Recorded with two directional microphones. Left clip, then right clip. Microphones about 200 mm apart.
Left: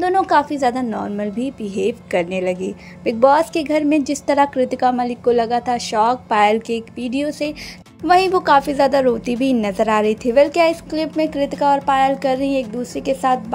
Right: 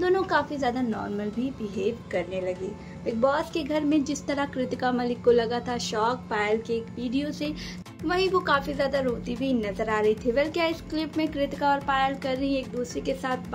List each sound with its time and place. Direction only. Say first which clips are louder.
0.0 s a woman's voice: left 9 dB; 35° left (ahead or behind)